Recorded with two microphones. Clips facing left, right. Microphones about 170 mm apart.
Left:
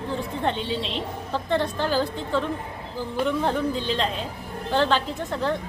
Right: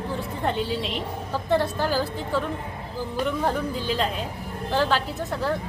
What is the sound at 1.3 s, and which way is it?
A woman's voice, 10° right (ahead or behind).